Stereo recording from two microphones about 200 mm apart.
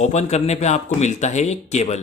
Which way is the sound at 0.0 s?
35° left (ahead or behind).